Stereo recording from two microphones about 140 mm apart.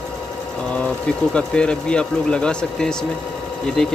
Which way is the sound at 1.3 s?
5° left (ahead or behind).